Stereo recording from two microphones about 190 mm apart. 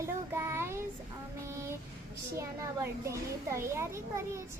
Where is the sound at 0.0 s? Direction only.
15° right (ahead or behind).